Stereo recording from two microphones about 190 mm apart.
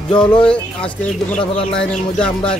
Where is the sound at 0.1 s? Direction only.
25° left (ahead or behind).